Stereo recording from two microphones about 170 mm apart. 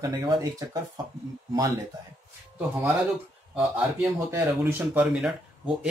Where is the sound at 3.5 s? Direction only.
5° right (ahead or behind).